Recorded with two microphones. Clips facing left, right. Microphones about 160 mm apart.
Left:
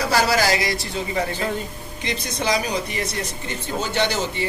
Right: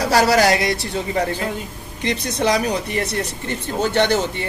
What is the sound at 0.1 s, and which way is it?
Speech, 65° right (ahead or behind).